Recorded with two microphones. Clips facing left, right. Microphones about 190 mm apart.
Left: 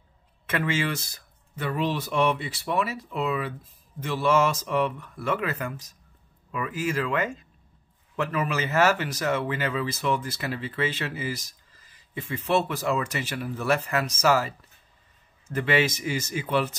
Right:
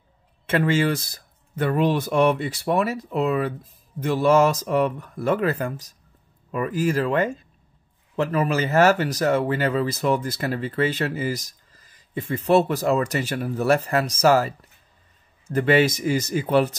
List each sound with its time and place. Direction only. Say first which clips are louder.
0.5 s speech: right 6 dB; 35° right (ahead or behind)